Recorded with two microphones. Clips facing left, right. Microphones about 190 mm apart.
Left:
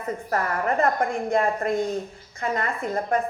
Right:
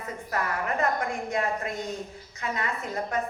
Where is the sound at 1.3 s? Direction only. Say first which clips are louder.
Left 8 dB; 55° left (ahead or behind).